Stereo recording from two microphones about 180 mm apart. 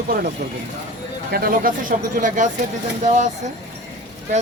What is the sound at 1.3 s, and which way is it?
A man's voice, 55° right (ahead or behind).